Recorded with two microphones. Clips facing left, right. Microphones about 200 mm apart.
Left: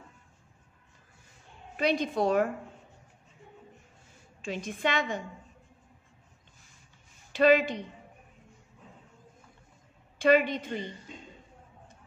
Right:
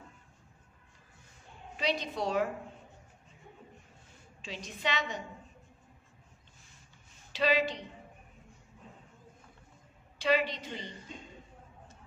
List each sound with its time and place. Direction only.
1.8 s a woman's voice: 50° left (ahead or behind)
4.4 s a woman's voice: 50° left (ahead or behind)
7.3 s a woman's voice: 50° left (ahead or behind)
10.1 s a woman's voice: 50° left (ahead or behind)